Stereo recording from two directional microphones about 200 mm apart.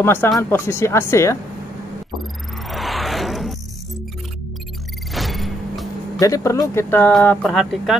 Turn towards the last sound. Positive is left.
turn(degrees=0)  # may be behind; listen again after turning